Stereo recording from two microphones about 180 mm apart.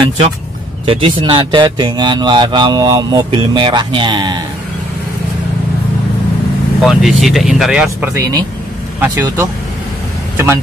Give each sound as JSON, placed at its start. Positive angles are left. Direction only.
{"t": 0.8, "sound": "speech", "side_deg": -30}
{"t": 6.8, "sound": "speech", "side_deg": 0}
{"t": 8.1, "sound": "speech", "side_deg": -20}